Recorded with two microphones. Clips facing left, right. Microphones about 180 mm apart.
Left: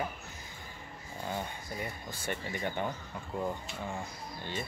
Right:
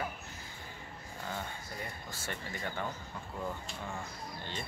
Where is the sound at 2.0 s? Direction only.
20° left (ahead or behind).